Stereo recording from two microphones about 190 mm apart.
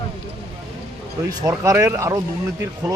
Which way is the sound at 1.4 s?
15° right (ahead or behind).